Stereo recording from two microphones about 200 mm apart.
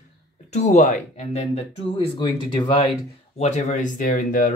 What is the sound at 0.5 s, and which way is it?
Speech, 35° left (ahead or behind).